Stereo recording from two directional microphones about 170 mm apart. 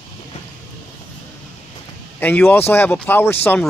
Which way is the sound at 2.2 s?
10° left (ahead or behind).